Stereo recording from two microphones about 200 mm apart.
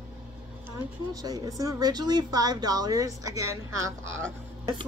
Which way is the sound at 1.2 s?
20° right (ahead or behind).